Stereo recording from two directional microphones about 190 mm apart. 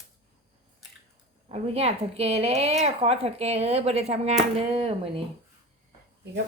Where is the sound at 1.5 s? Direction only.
30° right (ahead or behind).